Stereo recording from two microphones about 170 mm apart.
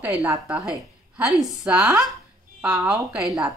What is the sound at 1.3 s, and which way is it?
A woman's voice, centre (ahead or behind).